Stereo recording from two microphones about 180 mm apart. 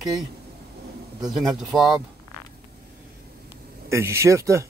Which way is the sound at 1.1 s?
Centre (ahead or behind).